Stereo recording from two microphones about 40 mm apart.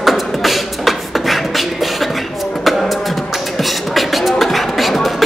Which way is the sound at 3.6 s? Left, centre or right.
Centre.